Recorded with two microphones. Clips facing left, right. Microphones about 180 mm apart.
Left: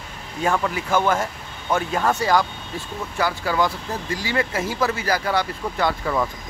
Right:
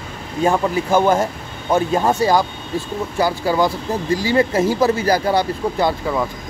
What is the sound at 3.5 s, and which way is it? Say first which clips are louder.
Speech: right 5 dB; 35° right (ahead or behind).